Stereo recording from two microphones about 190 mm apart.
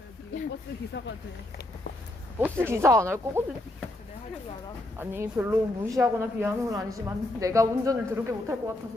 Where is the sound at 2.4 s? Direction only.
10° right (ahead or behind).